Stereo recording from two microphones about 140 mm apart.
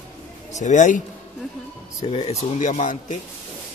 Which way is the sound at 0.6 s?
60° left (ahead or behind).